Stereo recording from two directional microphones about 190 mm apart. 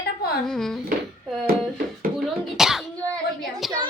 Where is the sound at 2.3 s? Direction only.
Centre (ahead or behind).